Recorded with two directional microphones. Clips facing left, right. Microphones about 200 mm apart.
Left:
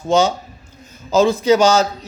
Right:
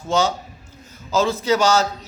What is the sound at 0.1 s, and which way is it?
A man's voice, 20° left (ahead or behind).